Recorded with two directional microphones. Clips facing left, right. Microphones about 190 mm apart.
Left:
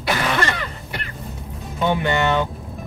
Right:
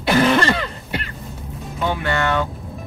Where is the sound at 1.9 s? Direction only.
20° left (ahead or behind).